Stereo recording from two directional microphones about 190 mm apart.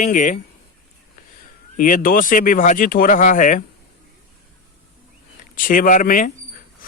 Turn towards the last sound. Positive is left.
turn(degrees=45)  # may be behind; listen again after turning